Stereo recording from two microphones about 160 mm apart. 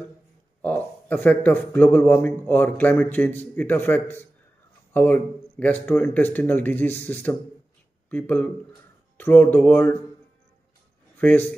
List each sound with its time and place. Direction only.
0.6 s a man's voice: 10° left (ahead or behind)
11.1 s speech: 10° left (ahead or behind)